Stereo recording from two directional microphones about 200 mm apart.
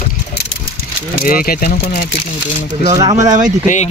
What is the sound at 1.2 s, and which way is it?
Speech, 45° left (ahead or behind).